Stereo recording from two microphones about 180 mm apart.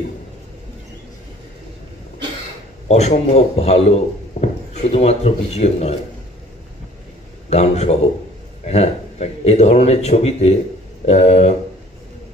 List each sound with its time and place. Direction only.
2.9 s a man's voice: 35° left (ahead or behind)
7.4 s speech: 35° left (ahead or behind)